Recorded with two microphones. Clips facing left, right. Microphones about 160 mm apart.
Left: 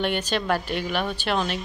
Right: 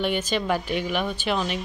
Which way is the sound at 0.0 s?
10° right (ahead or behind).